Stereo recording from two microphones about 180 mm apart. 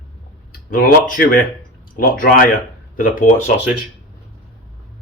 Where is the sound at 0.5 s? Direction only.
50° left (ahead or behind).